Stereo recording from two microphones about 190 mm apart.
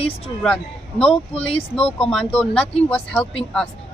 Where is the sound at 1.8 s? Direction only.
30° left (ahead or behind).